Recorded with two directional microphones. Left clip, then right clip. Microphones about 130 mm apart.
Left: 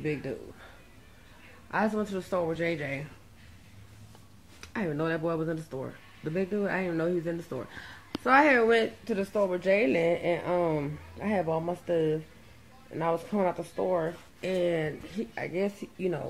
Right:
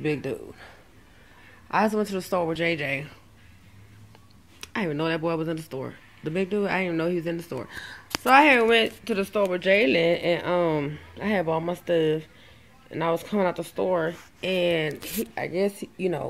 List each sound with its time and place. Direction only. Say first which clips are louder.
0.0 s speech: right 5 dB; 30° right (ahead or behind)
1.7 s speech: right 6 dB; 20° right (ahead or behind)
4.7 s speech: right 4 dB; 15° right (ahead or behind)